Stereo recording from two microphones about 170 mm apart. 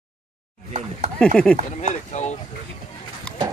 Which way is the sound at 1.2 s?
5° left (ahead or behind).